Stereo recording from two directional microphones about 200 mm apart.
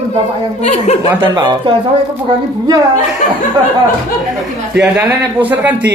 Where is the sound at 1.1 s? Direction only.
15° right (ahead or behind).